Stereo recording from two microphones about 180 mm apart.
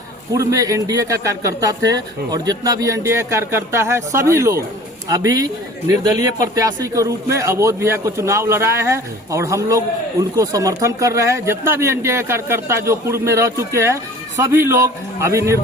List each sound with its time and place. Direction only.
0.3 s a man's voice: 20° right (ahead or behind)